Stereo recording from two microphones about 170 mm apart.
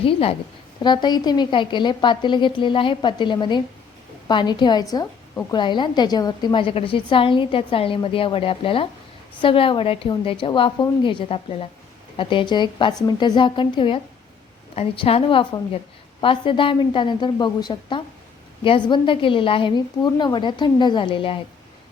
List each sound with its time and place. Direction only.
0.0 s a woman's voice: 35° left (ahead or behind)